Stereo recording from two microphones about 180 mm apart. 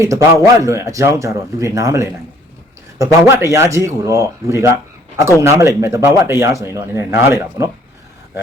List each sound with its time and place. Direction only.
0.0 s speech: 15° right (ahead or behind)